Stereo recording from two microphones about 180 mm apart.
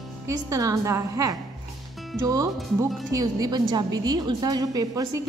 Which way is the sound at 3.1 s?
20° right (ahead or behind).